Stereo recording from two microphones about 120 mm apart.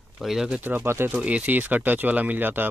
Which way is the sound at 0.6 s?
15° right (ahead or behind).